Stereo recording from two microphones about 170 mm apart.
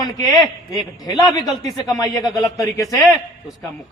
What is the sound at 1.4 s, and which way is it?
Speech, centre (ahead or behind).